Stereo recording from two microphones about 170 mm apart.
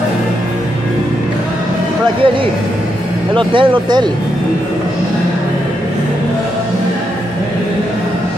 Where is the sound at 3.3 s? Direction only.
30° right (ahead or behind).